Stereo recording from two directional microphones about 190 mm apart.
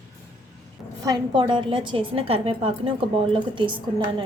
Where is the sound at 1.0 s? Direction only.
25° right (ahead or behind).